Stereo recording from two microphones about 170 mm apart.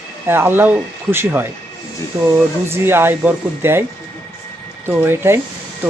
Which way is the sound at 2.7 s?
15° right (ahead or behind).